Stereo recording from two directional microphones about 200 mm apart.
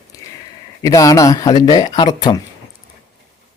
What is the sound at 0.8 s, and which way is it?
Speech, 15° left (ahead or behind).